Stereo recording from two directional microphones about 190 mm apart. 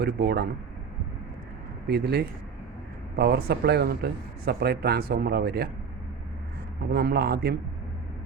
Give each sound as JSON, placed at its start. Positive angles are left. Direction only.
{"t": 0.2, "sound": "speech", "side_deg": -60}
{"t": 1.9, "sound": "speech", "side_deg": -60}
{"t": 6.9, "sound": "speech", "side_deg": -55}